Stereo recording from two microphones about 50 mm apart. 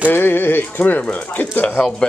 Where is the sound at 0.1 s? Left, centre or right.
Left.